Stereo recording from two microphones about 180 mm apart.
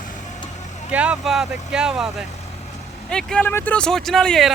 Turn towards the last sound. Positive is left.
turn(degrees=0)  # may be behind; listen again after turning